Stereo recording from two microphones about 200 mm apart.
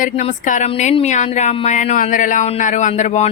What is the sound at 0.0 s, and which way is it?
Speech, 35° left (ahead or behind).